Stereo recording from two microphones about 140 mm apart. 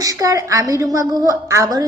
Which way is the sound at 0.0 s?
25° right (ahead or behind).